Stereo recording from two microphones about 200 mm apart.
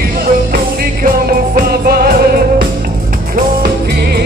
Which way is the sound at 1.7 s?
50° right (ahead or behind).